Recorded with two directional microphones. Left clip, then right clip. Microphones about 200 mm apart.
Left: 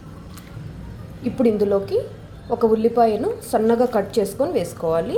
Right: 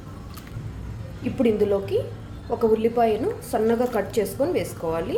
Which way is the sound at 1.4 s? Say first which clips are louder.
Left 3 dB; 20° left (ahead or behind).